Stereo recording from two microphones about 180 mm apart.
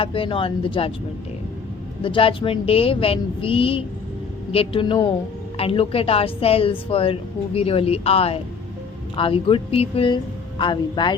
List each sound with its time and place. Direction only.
0.0 s speech: 30° left (ahead or behind)
2.0 s a woman's voice: 30° left (ahead or behind)